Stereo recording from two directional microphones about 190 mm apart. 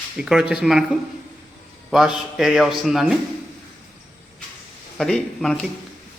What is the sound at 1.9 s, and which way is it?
A man's voice, centre (ahead or behind).